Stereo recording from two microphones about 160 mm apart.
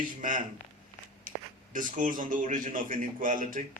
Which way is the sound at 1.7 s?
55° right (ahead or behind).